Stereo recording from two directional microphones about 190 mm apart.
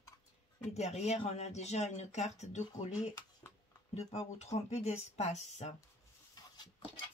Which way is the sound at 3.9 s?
35° left (ahead or behind).